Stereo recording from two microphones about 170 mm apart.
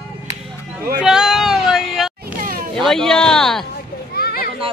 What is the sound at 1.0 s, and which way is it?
Child singing, 5° right (ahead or behind).